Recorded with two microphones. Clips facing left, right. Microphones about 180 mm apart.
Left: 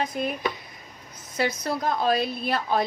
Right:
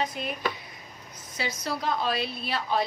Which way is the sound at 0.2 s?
45° left (ahead or behind).